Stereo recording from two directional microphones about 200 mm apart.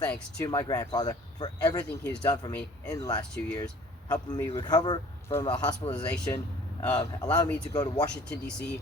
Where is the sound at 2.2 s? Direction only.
20° left (ahead or behind).